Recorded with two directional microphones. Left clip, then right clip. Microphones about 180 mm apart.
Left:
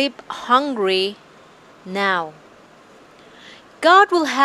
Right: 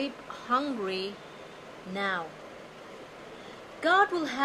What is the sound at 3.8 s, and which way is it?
Speech, 60° left (ahead or behind).